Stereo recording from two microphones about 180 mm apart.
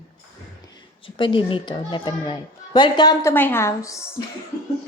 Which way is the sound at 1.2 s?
25° left (ahead or behind).